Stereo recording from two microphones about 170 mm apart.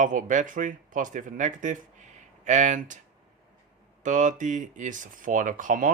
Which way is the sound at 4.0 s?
50° right (ahead or behind).